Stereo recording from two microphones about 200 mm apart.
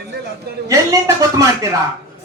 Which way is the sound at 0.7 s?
15° right (ahead or behind).